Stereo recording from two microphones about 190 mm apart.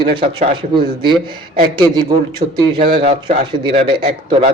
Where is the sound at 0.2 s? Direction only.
25° right (ahead or behind).